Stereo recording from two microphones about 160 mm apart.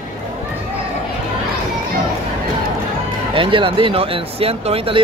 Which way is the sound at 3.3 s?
35° right (ahead or behind).